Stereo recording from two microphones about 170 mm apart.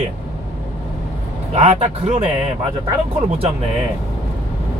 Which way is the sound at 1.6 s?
40° right (ahead or behind).